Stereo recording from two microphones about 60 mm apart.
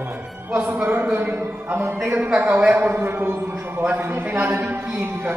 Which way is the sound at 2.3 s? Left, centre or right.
Right.